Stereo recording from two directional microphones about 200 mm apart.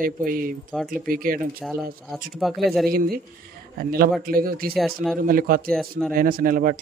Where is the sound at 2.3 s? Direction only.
Centre (ahead or behind).